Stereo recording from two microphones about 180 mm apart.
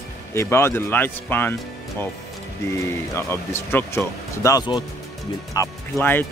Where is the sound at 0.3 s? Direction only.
15° left (ahead or behind).